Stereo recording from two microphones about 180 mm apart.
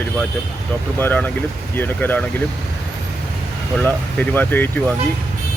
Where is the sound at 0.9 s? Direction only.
10° left (ahead or behind).